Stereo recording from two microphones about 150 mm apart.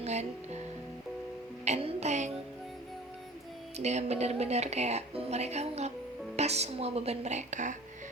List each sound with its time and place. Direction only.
0.0 s speech: 45° right (ahead or behind)
1.6 s music: 45° right (ahead or behind)
3.8 s speech: 50° right (ahead or behind)